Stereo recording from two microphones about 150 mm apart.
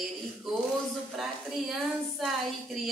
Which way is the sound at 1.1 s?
Centre (ahead or behind).